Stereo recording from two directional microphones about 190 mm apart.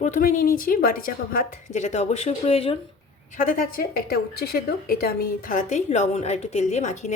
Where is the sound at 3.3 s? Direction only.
45° left (ahead or behind).